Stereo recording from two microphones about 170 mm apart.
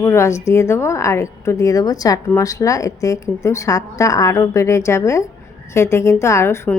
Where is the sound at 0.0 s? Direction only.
15° left (ahead or behind).